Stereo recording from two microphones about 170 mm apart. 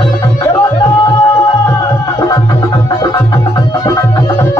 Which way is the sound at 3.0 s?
25° left (ahead or behind).